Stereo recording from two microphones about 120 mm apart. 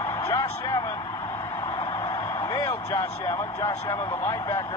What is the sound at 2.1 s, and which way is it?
Speech, 30° left (ahead or behind).